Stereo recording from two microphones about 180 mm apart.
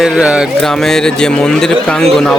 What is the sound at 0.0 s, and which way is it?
A man's voice, 5° right (ahead or behind).